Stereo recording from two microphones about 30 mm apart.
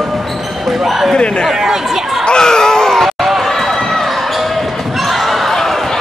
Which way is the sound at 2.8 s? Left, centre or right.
Centre.